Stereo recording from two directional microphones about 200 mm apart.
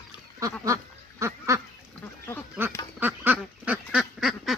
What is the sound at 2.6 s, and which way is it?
Duck, 10° right (ahead or behind).